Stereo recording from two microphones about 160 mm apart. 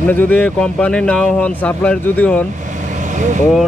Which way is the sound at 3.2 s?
50° right (ahead or behind).